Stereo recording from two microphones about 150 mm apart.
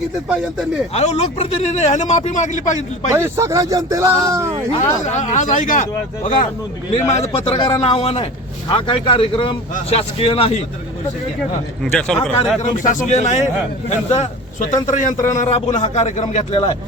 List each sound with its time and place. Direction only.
0.9 s speech: 45° left (ahead or behind)
3.1 s speech: 20° right (ahead or behind)
4.8 s speech: 50° left (ahead or behind)
7.2 s speech: 45° left (ahead or behind)
11.8 s speech: 5° left (ahead or behind)
12.8 s speech: 60° left (ahead or behind)
15.4 s speech: 45° left (ahead or behind)